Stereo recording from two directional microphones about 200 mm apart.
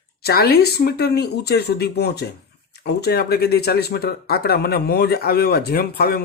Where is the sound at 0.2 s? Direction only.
50° left (ahead or behind).